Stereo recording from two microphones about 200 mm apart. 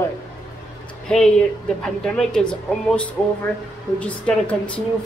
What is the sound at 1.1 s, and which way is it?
A woman's voice, 5° left (ahead or behind).